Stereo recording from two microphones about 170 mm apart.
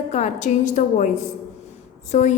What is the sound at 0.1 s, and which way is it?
A woman's voice, 45° left (ahead or behind).